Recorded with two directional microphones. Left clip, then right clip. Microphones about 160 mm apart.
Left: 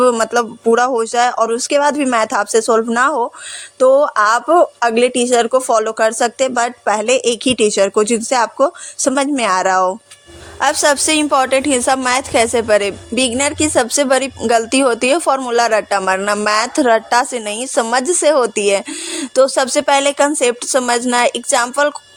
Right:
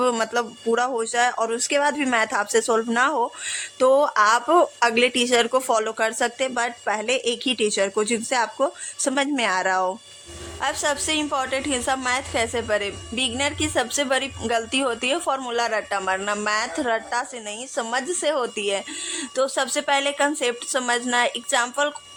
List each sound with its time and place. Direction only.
0.0 s a woman's voice: 30° left (ahead or behind)
10.6 s a woman's voice: 55° left (ahead or behind)
17.8 s a woman's voice: 50° left (ahead or behind)